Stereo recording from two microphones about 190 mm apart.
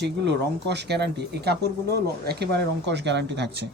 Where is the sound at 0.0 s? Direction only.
65° right (ahead or behind).